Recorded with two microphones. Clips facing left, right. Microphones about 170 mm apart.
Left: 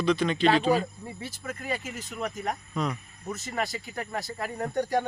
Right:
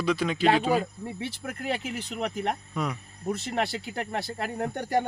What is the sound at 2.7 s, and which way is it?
Speech, 10° right (ahead or behind).